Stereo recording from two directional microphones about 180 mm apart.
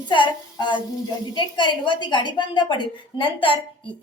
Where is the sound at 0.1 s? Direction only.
25° left (ahead or behind).